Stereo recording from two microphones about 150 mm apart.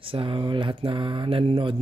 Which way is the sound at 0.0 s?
35° right (ahead or behind).